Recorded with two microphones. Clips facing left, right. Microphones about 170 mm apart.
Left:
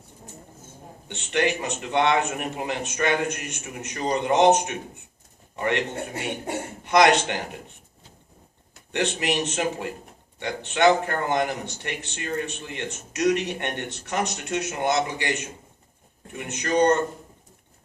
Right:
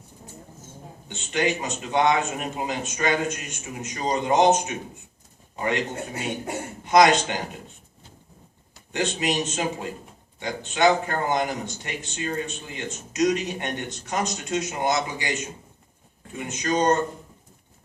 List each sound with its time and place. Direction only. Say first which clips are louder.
1.0 s a man's voice: left 1 dB; 65° left (ahead or behind)
6.8 s a man's voice: right 1 dB; 65° left (ahead or behind)
8.9 s a man's voice: even; 65° left (ahead or behind)
16.4 s a man's voice: left 2 dB; 65° left (ahead or behind)